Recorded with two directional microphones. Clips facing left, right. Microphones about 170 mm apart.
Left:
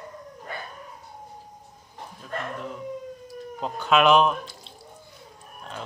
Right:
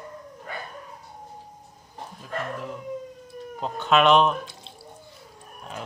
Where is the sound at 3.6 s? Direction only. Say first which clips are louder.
Even; centre (ahead or behind).